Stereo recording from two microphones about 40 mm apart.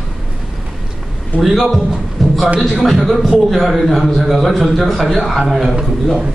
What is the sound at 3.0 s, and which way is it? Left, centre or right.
A man's voice, centre.